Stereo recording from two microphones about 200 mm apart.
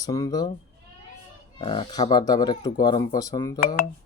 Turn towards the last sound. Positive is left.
turn(degrees=20)  # may be behind; listen again after turning